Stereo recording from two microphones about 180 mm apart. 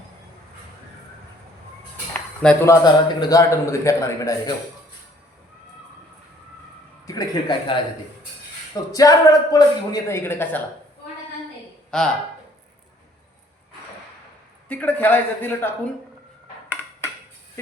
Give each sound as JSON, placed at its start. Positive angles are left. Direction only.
{"t": 2.6, "sound": "a man's voice", "side_deg": 20}
{"t": 7.1, "sound": "a man's voice", "side_deg": 20}
{"t": 8.9, "sound": "a man's voice", "side_deg": 20}
{"t": 11.9, "sound": "speech", "side_deg": 5}
{"t": 14.7, "sound": "a man's voice", "side_deg": 10}